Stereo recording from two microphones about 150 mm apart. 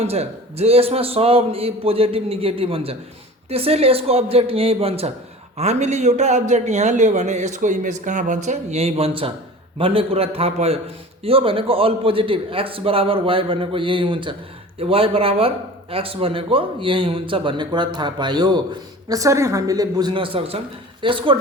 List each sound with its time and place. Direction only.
0.0 s speech: 45° right (ahead or behind)